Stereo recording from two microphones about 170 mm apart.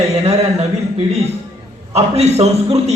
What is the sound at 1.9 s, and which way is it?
Speech, 40° right (ahead or behind).